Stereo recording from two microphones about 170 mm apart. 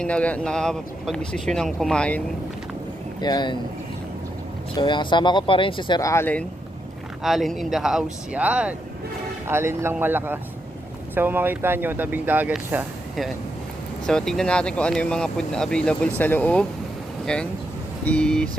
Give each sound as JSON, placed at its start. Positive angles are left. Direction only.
{"t": 0.0, "sound": "speech", "side_deg": 5}
{"t": 3.2, "sound": "speech", "side_deg": 25}
{"t": 4.8, "sound": "speech", "side_deg": 25}
{"t": 7.2, "sound": "speech", "side_deg": 0}
{"t": 18.0, "sound": "speech", "side_deg": 5}